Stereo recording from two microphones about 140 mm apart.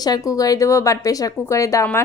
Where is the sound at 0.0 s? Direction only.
25° left (ahead or behind).